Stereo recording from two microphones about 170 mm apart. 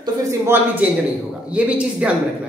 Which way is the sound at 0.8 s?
10° right (ahead or behind).